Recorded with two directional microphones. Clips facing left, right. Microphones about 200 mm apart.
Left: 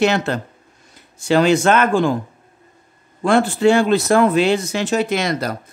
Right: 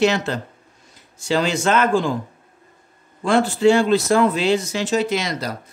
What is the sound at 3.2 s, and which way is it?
Speech, 60° left (ahead or behind).